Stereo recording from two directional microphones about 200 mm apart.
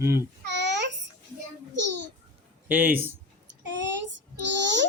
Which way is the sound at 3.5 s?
65° right (ahead or behind).